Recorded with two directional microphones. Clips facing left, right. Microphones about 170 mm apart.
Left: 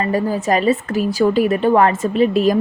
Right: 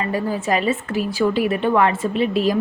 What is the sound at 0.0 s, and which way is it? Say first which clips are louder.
A woman's voice: left 4 dB; 40° left (ahead or behind).